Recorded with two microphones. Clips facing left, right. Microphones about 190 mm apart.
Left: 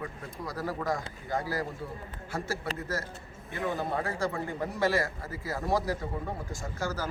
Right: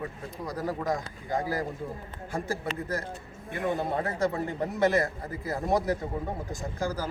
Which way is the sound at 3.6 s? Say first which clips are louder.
Right 2 dB; 20° right (ahead or behind).